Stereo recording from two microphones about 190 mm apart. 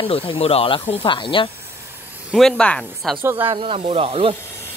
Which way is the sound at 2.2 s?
Centre (ahead or behind).